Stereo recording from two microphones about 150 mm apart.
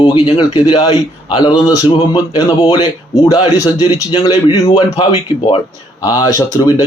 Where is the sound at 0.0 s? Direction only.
35° left (ahead or behind).